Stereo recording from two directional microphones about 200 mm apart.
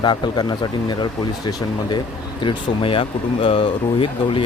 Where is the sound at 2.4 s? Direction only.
25° left (ahead or behind).